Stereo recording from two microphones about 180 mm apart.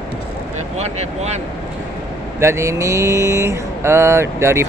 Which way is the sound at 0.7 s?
35° right (ahead or behind).